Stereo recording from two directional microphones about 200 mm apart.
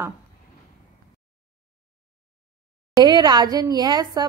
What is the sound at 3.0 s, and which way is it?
A woman's voice, 20° right (ahead or behind).